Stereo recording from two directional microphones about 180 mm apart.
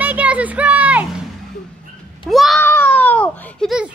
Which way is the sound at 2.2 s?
Centre (ahead or behind).